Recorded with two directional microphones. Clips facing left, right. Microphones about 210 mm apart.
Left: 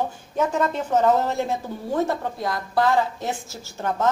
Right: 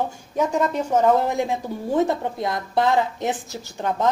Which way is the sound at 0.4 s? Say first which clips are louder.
Right 1 dB; 10° right (ahead or behind).